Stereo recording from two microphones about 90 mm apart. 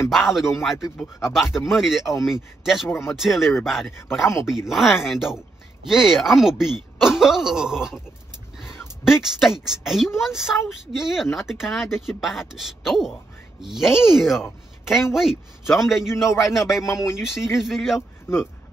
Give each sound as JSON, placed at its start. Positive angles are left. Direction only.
{"t": 0.1, "sound": "speech", "side_deg": 0}
{"t": 2.9, "sound": "speech", "side_deg": 25}
{"t": 3.2, "sound": "speech", "side_deg": 0}
{"t": 8.5, "sound": "a sound", "side_deg": -5}
{"t": 9.7, "sound": "speech", "side_deg": 0}